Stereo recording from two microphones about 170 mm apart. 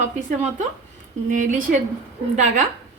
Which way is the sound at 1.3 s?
50° right (ahead or behind).